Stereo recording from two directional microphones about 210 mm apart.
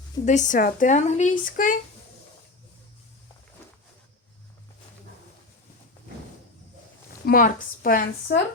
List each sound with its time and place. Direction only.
0.3 s speech: 35° left (ahead or behind)
7.3 s speech: 40° left (ahead or behind)